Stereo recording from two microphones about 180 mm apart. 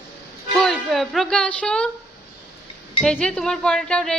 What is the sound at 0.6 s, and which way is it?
A woman's voice, centre (ahead or behind).